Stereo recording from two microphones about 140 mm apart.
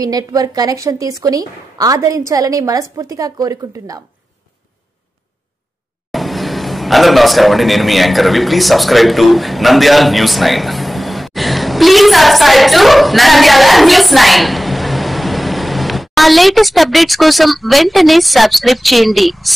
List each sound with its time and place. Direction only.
0.0 s a woman's voice: 25° right (ahead or behind)
6.1 s a man's voice: centre (ahead or behind)